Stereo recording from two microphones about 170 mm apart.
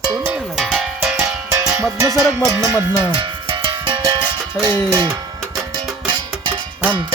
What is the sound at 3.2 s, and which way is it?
Music, 25° right (ahead or behind).